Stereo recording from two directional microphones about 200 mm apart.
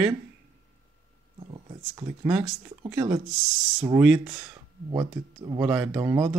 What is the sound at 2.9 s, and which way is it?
Speech, 5° right (ahead or behind).